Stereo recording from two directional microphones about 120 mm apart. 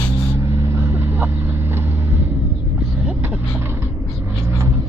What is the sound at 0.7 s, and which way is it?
Vehicle, 20° right (ahead or behind).